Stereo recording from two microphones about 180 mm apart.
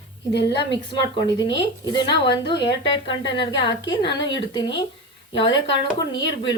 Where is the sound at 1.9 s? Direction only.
25° left (ahead or behind).